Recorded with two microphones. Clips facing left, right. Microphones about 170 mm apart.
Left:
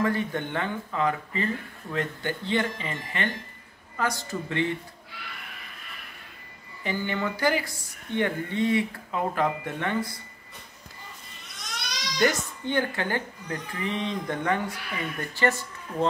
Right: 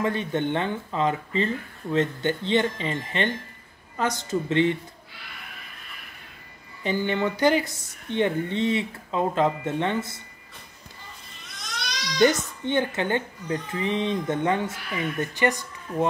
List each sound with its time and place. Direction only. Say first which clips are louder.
0.0 s speech: right 1 dB; 20° right (ahead or behind)
6.8 s speech: right 4 dB; 20° right (ahead or behind)
12.2 s speech: right 5 dB; 20° right (ahead or behind)